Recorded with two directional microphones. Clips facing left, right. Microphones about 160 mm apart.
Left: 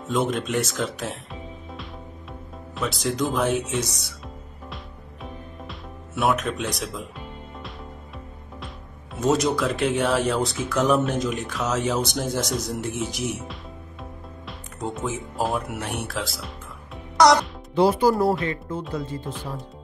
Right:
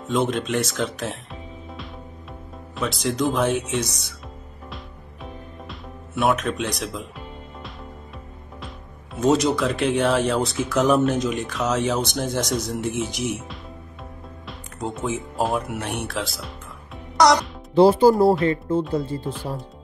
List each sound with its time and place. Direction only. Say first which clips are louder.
0.0 s speech: right 1 dB; 5° left (ahead or behind)
5.2 s music: even; centre (ahead or behind)
9.1 s speech: right 2 dB; centre (ahead or behind)
17.2 s music: even; centre (ahead or behind)
17.7 s speech: right 5 dB; 30° right (ahead or behind)